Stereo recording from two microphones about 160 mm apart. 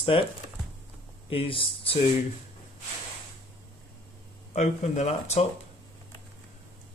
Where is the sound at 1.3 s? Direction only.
35° left (ahead or behind).